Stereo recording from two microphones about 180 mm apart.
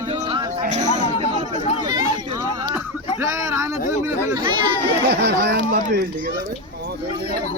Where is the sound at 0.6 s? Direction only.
40° right (ahead or behind).